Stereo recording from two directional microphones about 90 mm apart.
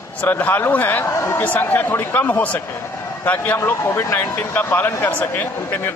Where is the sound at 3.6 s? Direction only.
30° left (ahead or behind).